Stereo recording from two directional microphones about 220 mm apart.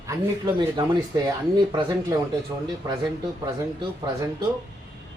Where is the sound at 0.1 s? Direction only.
15° right (ahead or behind).